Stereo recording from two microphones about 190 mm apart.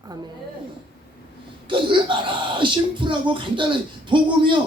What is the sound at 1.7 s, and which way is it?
Speech, 25° right (ahead or behind).